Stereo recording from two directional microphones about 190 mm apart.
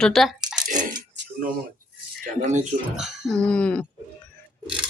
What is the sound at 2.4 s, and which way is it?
Speech, 40° right (ahead or behind).